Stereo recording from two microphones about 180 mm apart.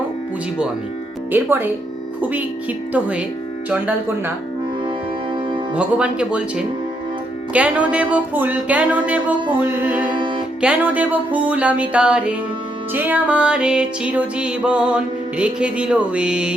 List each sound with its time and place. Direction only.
1.3 s music: 10° right (ahead or behind)
5.7 s music: 5° right (ahead or behind)
10.2 s music: 30° right (ahead or behind)
10.6 s music: 10° right (ahead or behind)